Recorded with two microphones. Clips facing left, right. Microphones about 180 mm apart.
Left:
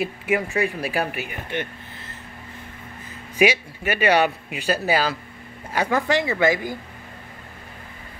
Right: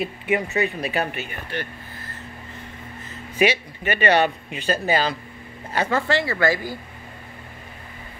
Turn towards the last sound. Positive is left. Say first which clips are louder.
# left 1 dB
turn(degrees=20)  # may be behind; listen again after turning